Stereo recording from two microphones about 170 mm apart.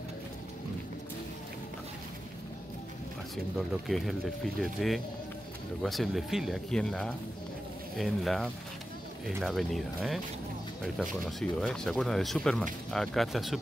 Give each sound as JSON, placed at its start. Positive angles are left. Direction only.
{"t": 3.5, "sound": "speech", "side_deg": 0}